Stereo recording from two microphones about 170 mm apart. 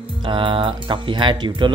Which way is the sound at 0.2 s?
30° right (ahead or behind).